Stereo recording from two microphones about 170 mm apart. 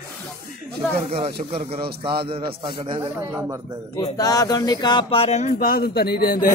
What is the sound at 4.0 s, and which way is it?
Speech, 20° left (ahead or behind).